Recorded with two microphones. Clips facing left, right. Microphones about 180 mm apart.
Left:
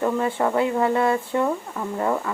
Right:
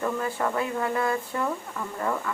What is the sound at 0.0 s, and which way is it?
Speech, 30° left (ahead or behind).